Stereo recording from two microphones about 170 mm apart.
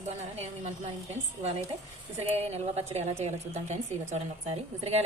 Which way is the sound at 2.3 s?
40° right (ahead or behind).